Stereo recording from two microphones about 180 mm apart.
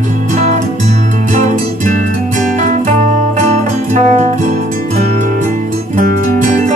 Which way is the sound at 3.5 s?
40° right (ahead or behind).